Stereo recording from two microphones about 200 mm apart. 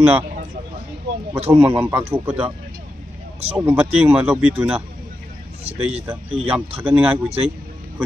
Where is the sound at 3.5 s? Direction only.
10° right (ahead or behind).